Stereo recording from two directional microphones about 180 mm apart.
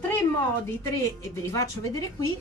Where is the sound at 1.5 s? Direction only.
20° left (ahead or behind).